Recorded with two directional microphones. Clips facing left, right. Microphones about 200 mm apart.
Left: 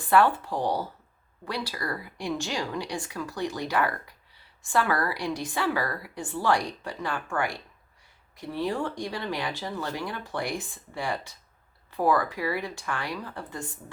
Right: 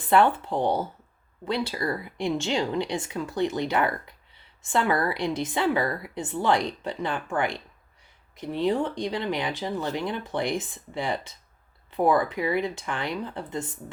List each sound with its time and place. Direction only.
0.1 s a woman's voice: 25° right (ahead or behind)